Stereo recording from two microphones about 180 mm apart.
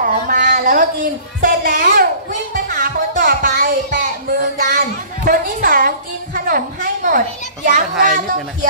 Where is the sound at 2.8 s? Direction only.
55° right (ahead or behind).